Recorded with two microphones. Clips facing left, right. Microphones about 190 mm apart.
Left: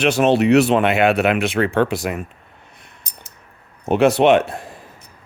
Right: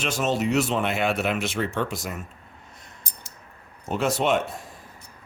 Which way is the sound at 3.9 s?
65° left (ahead or behind).